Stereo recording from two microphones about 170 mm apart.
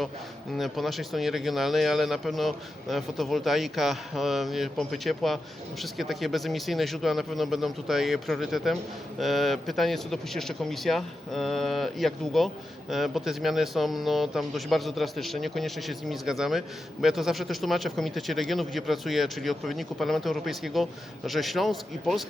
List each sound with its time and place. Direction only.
0.5 s speech: centre (ahead or behind)